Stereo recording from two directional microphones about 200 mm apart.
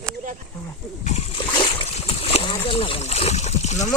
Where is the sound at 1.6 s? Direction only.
25° left (ahead or behind).